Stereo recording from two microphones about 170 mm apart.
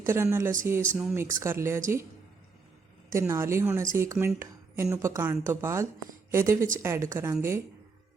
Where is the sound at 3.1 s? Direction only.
15° right (ahead or behind).